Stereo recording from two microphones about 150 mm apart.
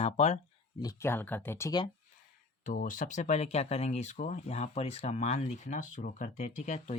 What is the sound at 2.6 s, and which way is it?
Speech, 60° left (ahead or behind).